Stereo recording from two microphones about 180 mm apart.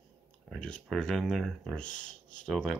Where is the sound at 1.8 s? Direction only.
45° left (ahead or behind).